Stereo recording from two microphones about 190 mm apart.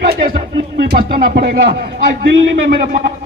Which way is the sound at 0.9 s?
55° right (ahead or behind).